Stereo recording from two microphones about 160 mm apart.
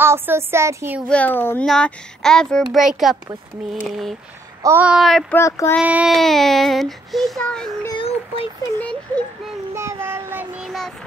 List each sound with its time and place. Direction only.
0.0 s speech: 15° right (ahead or behind)
1.0 s a child's voice: 10° left (ahead or behind)
5.3 s a child's voice: 15° left (ahead or behind)
5.8 s speech: 5° right (ahead or behind)
8.0 s speech: 35° left (ahead or behind)
9.8 s child singing: 15° right (ahead or behind)